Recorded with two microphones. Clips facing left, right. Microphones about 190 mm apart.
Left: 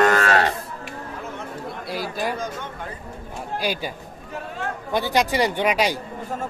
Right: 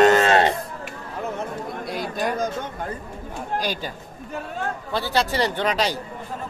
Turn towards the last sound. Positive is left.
turn(degrees=10)  # may be behind; listen again after turning